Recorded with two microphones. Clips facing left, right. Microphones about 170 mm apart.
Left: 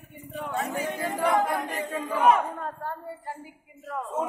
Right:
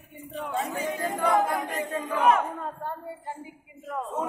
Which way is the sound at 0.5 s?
30° right (ahead or behind).